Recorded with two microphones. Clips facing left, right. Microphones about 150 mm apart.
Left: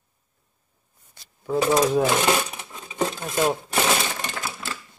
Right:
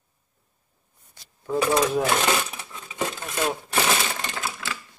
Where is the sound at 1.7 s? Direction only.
20° left (ahead or behind).